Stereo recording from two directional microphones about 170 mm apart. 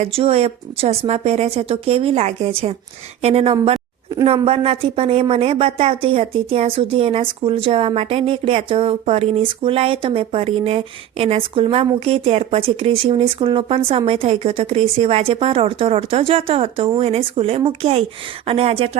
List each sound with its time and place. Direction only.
0.0 s a woman's voice: 35° right (ahead or behind)